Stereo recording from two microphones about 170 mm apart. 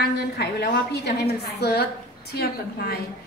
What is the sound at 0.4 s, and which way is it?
A woman's voice, 80° left.